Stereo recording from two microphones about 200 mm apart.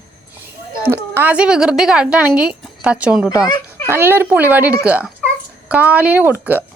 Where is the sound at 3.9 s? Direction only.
10° right (ahead or behind).